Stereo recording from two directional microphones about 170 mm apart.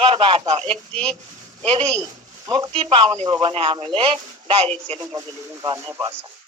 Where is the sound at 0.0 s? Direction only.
30° right (ahead or behind).